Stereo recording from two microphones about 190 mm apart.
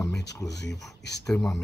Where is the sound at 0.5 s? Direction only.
65° left (ahead or behind).